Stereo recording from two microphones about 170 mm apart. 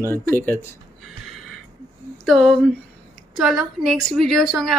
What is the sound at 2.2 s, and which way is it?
A woman's voice, 5° left (ahead or behind).